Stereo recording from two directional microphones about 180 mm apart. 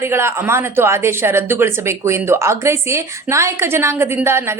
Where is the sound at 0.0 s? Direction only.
15° right (ahead or behind).